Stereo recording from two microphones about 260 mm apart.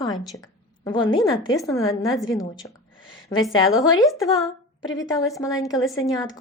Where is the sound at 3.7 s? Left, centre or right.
Centre.